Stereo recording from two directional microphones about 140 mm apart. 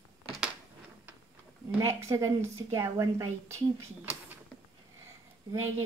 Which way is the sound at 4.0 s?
10° right (ahead or behind).